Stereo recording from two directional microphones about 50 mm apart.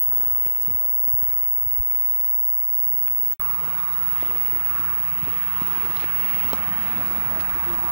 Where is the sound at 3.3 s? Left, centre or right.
Right.